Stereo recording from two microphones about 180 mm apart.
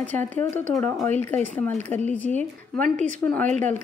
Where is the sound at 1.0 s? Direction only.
10° left (ahead or behind).